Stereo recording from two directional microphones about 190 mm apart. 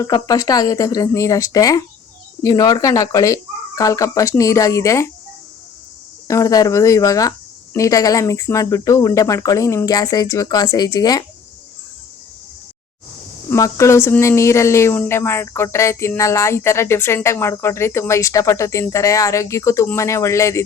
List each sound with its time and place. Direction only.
0.0 s speech: 20° left (ahead or behind)
6.2 s speech: 15° left (ahead or behind)
13.5 s speech: 15° left (ahead or behind)